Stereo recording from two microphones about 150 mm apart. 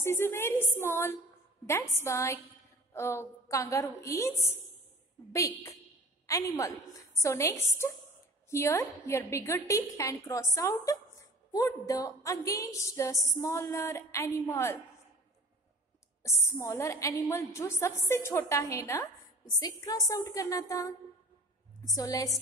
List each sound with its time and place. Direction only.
0.0 s a woman's voice: 15° left (ahead or behind)
16.4 s a woman's voice: 15° left (ahead or behind)
21.9 s a woman's voice: 25° left (ahead or behind)